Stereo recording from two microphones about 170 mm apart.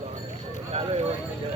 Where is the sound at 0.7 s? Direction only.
35° right (ahead or behind).